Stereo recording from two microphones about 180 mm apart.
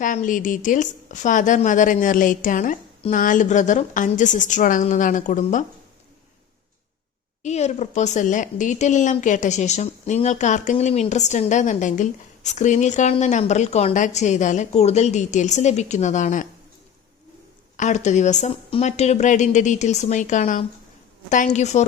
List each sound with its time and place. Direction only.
0.0 s a woman's voice: 45° left (ahead or behind)
7.4 s a woman's voice: 40° left (ahead or behind)
17.7 s a woman's voice: 40° left (ahead or behind)